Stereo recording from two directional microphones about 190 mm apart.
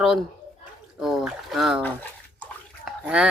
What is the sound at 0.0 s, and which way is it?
A woman's voice, centre (ahead or behind).